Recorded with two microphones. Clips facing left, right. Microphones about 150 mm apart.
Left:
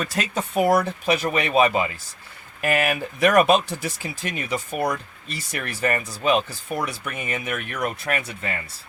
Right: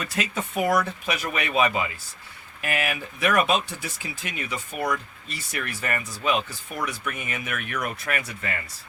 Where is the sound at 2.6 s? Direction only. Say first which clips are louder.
Left 6 dB; 45° left (ahead or behind).